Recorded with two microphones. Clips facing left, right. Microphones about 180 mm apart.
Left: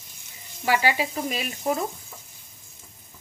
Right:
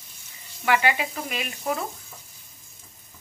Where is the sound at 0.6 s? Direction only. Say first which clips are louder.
Even; 35° left (ahead or behind).